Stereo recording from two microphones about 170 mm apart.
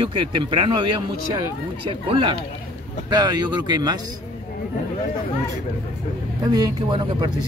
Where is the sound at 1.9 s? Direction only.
30° right (ahead or behind).